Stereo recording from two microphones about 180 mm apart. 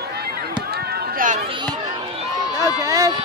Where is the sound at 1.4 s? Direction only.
25° right (ahead or behind).